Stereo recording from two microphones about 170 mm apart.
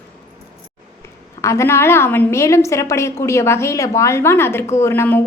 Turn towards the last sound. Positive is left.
turn(degrees=15)  # may be behind; listen again after turning